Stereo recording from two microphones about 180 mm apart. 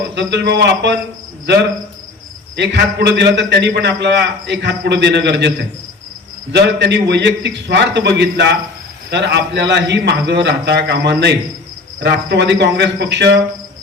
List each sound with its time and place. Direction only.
0.1 s a man's voice: 70° right (ahead or behind)
2.6 s a man's voice: 70° right (ahead or behind)
6.5 s a man's voice: 70° right (ahead or behind)